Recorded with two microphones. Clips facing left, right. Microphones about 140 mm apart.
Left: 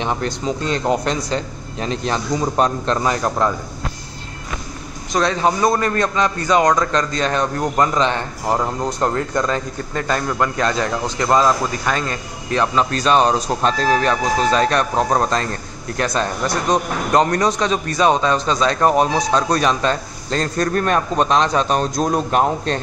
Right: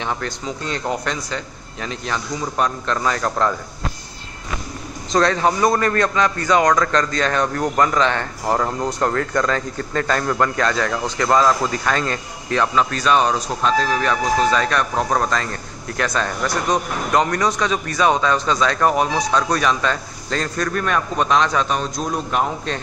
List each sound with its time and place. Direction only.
0.0 s a man's voice: 20° left (ahead or behind)
5.1 s a man's voice: 15° left (ahead or behind)
12.4 s a man's voice: 25° left (ahead or behind)